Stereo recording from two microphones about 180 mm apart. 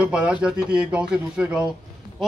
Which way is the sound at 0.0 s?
5° right (ahead or behind).